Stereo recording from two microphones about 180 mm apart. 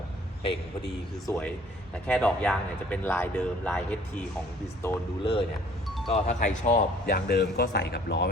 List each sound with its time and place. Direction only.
2.0 s speech: 5° left (ahead or behind)
5.2 s speech: 30° left (ahead or behind)
6.1 s speech: 40° left (ahead or behind)
7.1 s speech: 65° left (ahead or behind)